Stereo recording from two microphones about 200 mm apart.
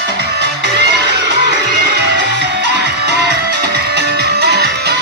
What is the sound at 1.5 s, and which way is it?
Music, 55° right (ahead or behind).